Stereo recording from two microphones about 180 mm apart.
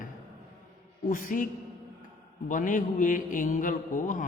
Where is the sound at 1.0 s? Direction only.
50° left (ahead or behind).